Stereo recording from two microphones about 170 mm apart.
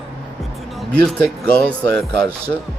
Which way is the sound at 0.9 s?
5° left (ahead or behind).